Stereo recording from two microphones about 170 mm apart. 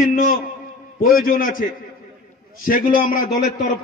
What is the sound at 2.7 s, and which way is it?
Speech, 55° left (ahead or behind).